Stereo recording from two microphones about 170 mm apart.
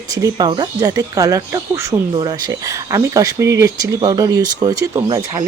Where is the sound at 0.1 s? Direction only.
20° right (ahead or behind).